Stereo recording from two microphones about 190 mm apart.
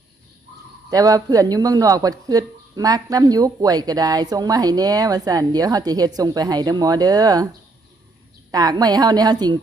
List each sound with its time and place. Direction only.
0.9 s speech: 20° right (ahead or behind)
8.5 s speech: 20° right (ahead or behind)